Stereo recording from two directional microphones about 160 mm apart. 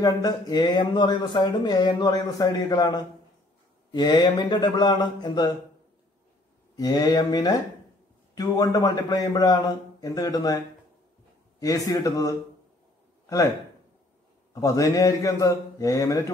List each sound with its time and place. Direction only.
0.0 s speech: 25° left (ahead or behind)
6.8 s speech: 25° left (ahead or behind)
11.6 s speech: 20° left (ahead or behind)
14.5 s speech: 20° left (ahead or behind)